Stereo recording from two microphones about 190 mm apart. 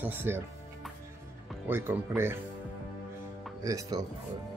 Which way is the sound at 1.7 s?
10° right (ahead or behind).